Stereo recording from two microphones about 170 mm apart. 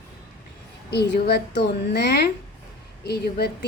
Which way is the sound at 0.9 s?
75° left (ahead or behind).